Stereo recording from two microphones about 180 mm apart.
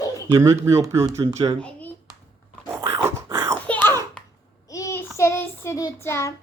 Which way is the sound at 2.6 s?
15° right (ahead or behind).